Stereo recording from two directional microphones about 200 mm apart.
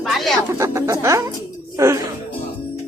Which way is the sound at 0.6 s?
15° right (ahead or behind).